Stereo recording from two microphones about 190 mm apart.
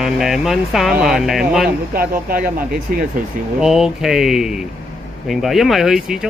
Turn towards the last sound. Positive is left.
turn(degrees=-5)  # may be behind; listen again after turning